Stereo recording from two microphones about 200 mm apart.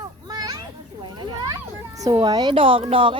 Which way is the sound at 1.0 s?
20° right (ahead or behind).